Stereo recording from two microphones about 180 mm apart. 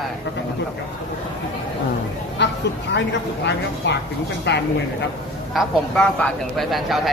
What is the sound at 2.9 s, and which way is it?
Speech, 75° left (ahead or behind).